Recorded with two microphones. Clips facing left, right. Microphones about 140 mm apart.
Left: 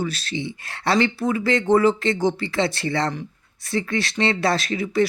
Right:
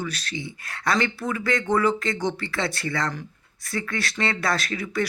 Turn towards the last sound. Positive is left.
turn(degrees=25)  # may be behind; listen again after turning